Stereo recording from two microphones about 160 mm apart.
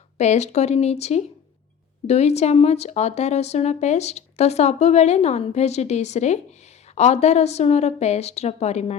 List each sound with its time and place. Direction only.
0.2 s a woman's voice: 45° left (ahead or behind)